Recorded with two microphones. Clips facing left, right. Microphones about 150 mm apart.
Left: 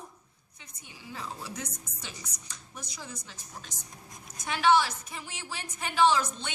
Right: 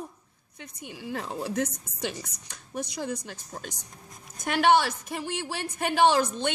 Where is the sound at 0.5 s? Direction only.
65° right (ahead or behind).